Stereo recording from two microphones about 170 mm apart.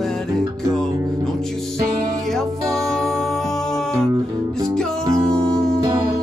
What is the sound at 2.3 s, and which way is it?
Music, centre (ahead or behind).